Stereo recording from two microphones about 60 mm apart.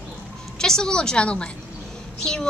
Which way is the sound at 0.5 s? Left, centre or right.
Centre.